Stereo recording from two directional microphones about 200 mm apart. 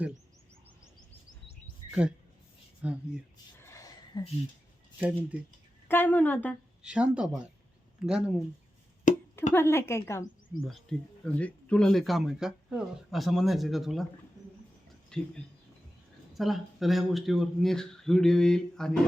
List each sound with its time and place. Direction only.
1.9 s speech: 5° right (ahead or behind)
3.7 s a sound: 15° left (ahead or behind)
4.9 s speech: 10° right (ahead or behind)
5.9 s a woman's voice: 10° left (ahead or behind)
6.8 s speech: 5° right (ahead or behind)
9.1 s a sound: 40° left (ahead or behind)
9.5 s a woman's voice: 10° left (ahead or behind)
10.7 s speech: centre (ahead or behind)
15.1 s speech: 5° left (ahead or behind)
16.4 s speech: centre (ahead or behind)